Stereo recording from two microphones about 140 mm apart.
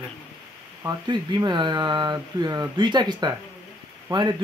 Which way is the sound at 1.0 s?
30° right (ahead or behind).